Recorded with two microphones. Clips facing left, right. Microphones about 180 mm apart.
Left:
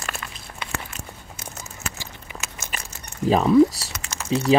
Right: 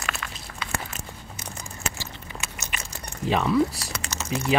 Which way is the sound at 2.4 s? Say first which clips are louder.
Left 2 dB; 45° left (ahead or behind).